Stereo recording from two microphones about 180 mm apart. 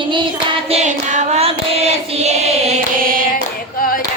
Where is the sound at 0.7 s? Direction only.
40° right (ahead or behind).